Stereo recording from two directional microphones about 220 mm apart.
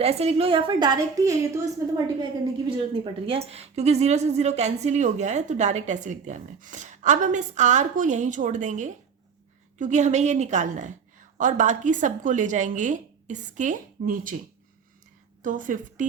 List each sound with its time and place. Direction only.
0.0 s a woman's voice: 30° right (ahead or behind)
15.4 s a woman's voice: 35° right (ahead or behind)